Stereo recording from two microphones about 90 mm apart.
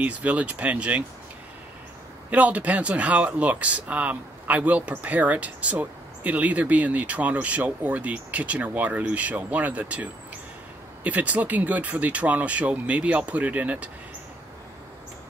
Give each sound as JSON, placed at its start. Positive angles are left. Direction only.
{"t": 0.0, "sound": "speech", "side_deg": -15}
{"t": 2.3, "sound": "speech", "side_deg": -15}
{"t": 11.1, "sound": "speech", "side_deg": -15}